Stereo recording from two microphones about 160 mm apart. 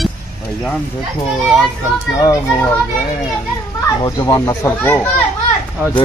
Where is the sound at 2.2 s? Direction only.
15° left (ahead or behind).